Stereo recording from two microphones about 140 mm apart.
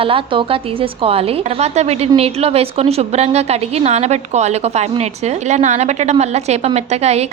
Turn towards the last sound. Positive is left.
turn(degrees=-50)  # may be behind; listen again after turning